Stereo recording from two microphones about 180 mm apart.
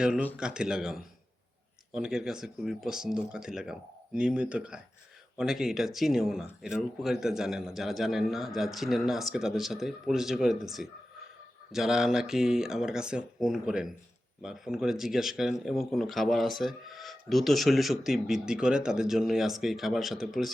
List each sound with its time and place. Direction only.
0.0 s speech: 5° right (ahead or behind)